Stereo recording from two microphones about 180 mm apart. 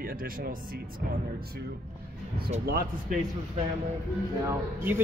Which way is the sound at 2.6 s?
55° right (ahead or behind).